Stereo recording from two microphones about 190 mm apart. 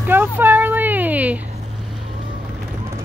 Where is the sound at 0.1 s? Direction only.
10° right (ahead or behind).